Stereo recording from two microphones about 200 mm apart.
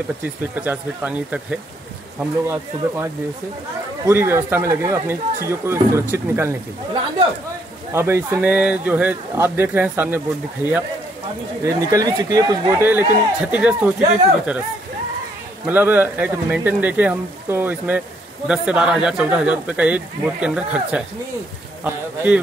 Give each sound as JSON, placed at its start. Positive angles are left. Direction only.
{"t": 0.4, "sound": "speech", "side_deg": -10}
{"t": 7.9, "sound": "speech", "side_deg": -10}
{"t": 15.6, "sound": "speech", "side_deg": -10}